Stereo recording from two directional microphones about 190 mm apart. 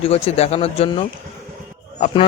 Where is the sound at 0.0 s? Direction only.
30° left (ahead or behind).